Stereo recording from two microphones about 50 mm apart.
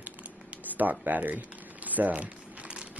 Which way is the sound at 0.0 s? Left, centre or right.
Right.